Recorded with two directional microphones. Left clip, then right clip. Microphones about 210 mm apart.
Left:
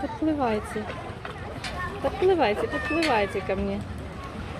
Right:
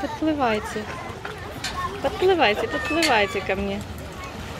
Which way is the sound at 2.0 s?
Centre (ahead or behind).